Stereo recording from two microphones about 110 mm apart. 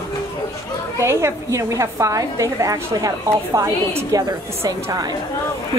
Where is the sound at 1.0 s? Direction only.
25° right (ahead or behind).